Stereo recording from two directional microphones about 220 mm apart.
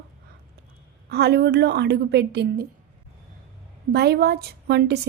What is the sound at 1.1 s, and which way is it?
A woman's voice, 50° right (ahead or behind).